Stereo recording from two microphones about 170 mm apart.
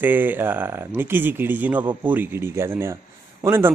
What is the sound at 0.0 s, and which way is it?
Speech, 10° right (ahead or behind).